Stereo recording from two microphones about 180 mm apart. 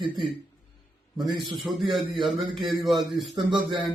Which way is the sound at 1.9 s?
Centre (ahead or behind).